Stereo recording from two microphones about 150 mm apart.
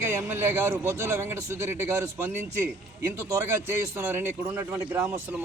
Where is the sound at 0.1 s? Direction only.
15° right (ahead or behind).